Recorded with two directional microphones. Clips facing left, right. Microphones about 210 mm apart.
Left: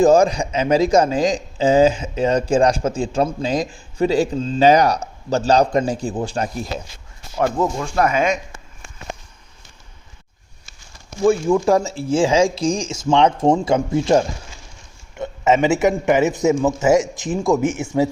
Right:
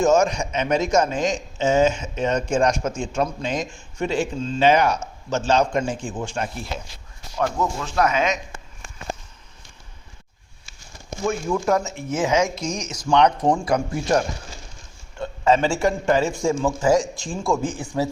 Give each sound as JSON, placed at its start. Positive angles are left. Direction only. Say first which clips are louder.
{"t": 0.0, "sound": "a man's voice", "louder": "left 5 dB", "side_deg": 35}
{"t": 8.0, "sound": "speech", "louder": "left 3 dB", "side_deg": 50}
{"t": 11.3, "sound": "speech", "louder": "left 6 dB", "side_deg": 30}